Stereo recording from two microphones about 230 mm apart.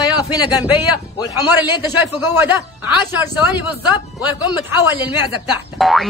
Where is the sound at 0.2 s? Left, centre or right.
Centre.